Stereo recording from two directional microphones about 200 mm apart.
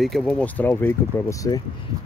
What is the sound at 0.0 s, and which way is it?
Speech, centre (ahead or behind).